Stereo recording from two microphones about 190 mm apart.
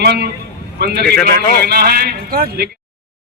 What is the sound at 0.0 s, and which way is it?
A man's voice, 60° right (ahead or behind).